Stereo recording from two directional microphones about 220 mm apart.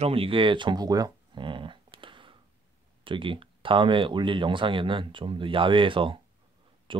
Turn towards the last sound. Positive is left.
turn(degrees=-20)  # may be behind; listen again after turning